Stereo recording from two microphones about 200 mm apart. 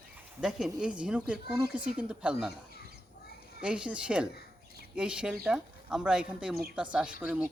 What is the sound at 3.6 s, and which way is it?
Speech, 5° right (ahead or behind).